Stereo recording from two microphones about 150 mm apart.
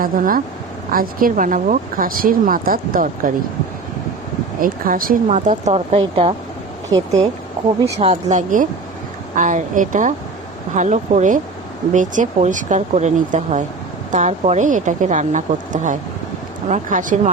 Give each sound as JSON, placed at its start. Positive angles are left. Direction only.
{"t": 0.0, "sound": "speech", "side_deg": -70}
{"t": 4.6, "sound": "speech", "side_deg": -70}
{"t": 5.3, "sound": "a woman's voice", "side_deg": -50}
{"t": 7.9, "sound": "speech", "side_deg": -45}